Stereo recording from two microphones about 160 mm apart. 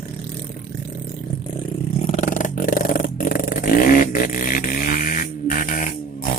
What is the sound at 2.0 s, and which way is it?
Vehicle, 50° left (ahead or behind).